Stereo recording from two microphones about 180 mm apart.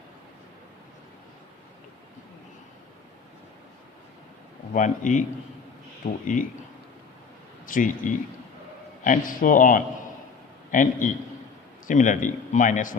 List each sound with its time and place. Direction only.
4.7 s speech: 45° left (ahead or behind)
6.2 s speech: 45° left (ahead or behind)
7.7 s speech: 45° left (ahead or behind)